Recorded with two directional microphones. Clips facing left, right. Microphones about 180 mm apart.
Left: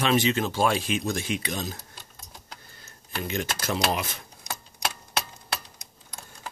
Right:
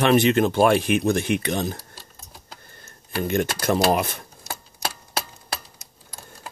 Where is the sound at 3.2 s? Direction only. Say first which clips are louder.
Right 7 dB; 50° right (ahead or behind).